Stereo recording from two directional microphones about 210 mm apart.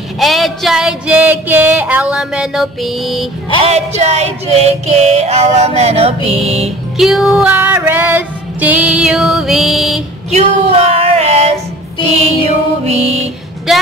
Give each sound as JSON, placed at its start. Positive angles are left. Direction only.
{"t": 0.2, "sound": "female singing", "side_deg": 0}
{"t": 3.6, "sound": "music", "side_deg": -30}
{"t": 7.0, "sound": "female singing", "side_deg": 0}
{"t": 10.3, "sound": "female singing", "side_deg": -30}
{"t": 12.1, "sound": "music", "side_deg": -30}